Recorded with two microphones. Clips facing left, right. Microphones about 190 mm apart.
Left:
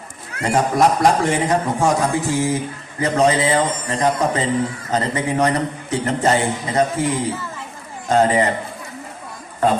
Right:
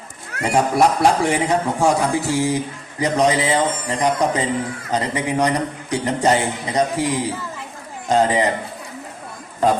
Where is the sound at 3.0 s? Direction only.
15° right (ahead or behind).